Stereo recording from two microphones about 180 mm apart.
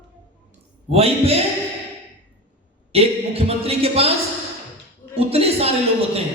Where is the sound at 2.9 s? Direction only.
35° right (ahead or behind).